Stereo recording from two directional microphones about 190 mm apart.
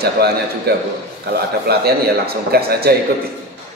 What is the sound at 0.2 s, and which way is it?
A man's voice, 55° right (ahead or behind).